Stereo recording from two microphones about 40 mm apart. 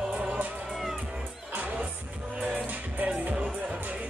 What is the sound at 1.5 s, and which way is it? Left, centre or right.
Music, right.